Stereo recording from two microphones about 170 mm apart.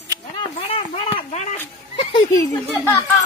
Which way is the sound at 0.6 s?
35° left (ahead or behind).